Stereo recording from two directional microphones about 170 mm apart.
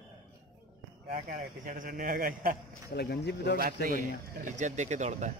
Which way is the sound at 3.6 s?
60° right (ahead or behind).